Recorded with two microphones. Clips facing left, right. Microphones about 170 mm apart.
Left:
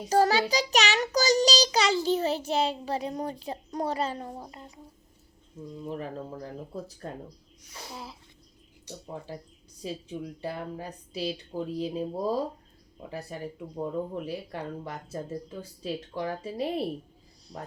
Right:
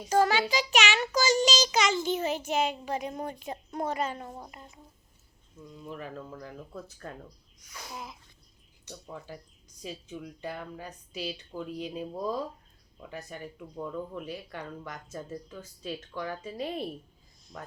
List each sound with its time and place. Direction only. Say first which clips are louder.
0.1 s child singing: left 2 dB; 35° left (ahead or behind)
5.9 s speech: left 4 dB; 35° left (ahead or behind)